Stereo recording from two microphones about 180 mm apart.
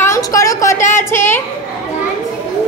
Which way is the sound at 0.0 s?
15° left (ahead or behind).